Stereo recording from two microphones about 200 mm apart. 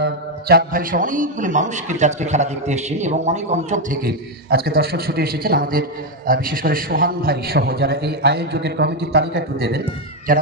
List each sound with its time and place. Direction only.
0.0 s a man's voice: 50° right (ahead or behind)